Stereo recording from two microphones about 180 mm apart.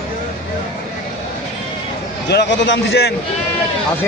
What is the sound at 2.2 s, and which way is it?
Speech, 75° left (ahead or behind).